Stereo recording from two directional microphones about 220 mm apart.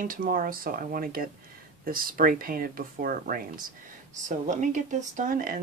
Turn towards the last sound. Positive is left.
turn(degrees=-40)  # may be behind; listen again after turning